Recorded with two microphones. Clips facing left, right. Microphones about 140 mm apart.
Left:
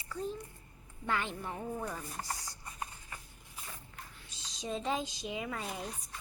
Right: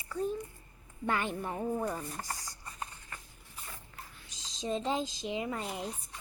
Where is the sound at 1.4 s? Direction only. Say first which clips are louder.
Right 5 dB; 20° right (ahead or behind).